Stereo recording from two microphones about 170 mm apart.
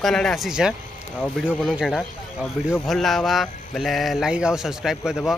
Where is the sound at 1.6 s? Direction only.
5° right (ahead or behind).